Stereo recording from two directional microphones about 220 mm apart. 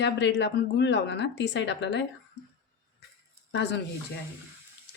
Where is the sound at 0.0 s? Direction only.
55° left (ahead or behind).